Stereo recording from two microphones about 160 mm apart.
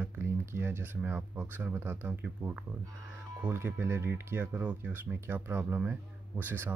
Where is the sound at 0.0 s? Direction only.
15° right (ahead or behind).